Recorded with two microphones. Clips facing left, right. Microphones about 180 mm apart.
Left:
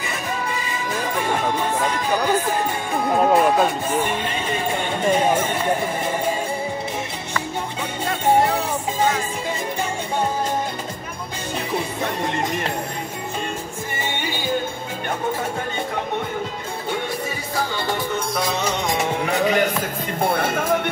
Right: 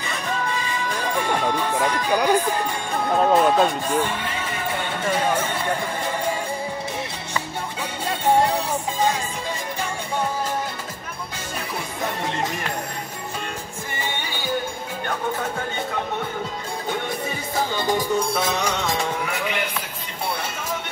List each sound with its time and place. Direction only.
1.4 s speech: 15° left (ahead or behind)
2.0 s speech: 15° right (ahead or behind)
2.4 s music: 10° left (ahead or behind)
4.0 s music: 20° left (ahead or behind)
5.4 s speech: 15° left (ahead or behind)
17.7 s music: 15° right (ahead or behind)
18.7 s music: 15° left (ahead or behind)
19.3 s a man's voice: 40° left (ahead or behind)
20.2 s speech: 50° left (ahead or behind)